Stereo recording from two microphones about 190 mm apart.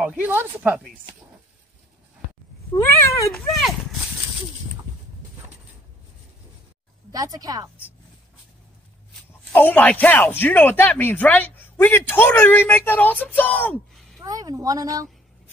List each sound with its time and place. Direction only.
0.0 s speech: 5° right (ahead or behind)
2.8 s speech: 15° left (ahead or behind)
3.3 s speech: centre (ahead or behind)
7.1 s a woman's voice: 20° right (ahead or behind)
9.5 s speech: 10° left (ahead or behind)
14.2 s a woman's voice: 20° right (ahead or behind)